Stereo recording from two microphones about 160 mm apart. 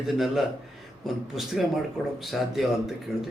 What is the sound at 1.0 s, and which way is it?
Speech, centre (ahead or behind).